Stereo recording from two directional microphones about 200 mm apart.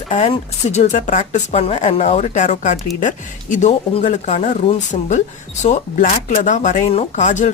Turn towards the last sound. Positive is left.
turn(degrees=35)  # may be behind; listen again after turning